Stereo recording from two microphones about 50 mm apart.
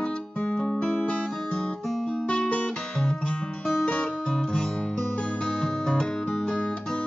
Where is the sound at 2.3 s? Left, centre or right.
Centre.